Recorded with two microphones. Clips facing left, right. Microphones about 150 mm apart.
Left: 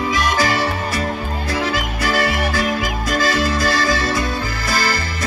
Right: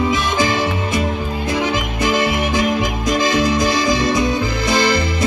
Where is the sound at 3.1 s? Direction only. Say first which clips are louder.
Right 2 dB; 20° right (ahead or behind).